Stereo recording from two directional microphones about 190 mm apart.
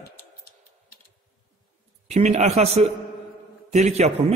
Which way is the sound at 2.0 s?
35° right (ahead or behind).